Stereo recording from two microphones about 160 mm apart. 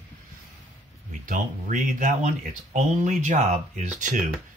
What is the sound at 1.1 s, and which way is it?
Speech, 55° right (ahead or behind).